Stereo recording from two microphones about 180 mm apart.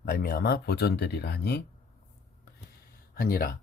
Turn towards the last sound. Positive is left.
turn(degrees=55)  # may be behind; listen again after turning